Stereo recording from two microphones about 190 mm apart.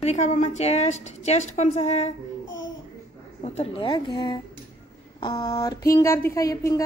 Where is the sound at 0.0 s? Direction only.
35° left (ahead or behind).